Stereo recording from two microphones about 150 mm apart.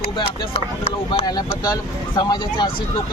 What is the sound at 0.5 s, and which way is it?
Speech, 45° left (ahead or behind).